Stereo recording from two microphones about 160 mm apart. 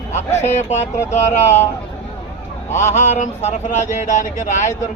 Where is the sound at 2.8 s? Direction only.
45° left (ahead or behind).